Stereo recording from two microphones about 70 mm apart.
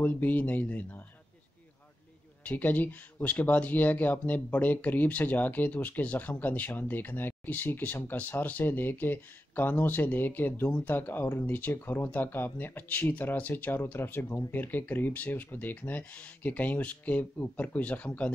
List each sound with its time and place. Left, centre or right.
0.0 s speech: left
2.4 s speech: left
14.2 s speech: left
14.5 s speech: left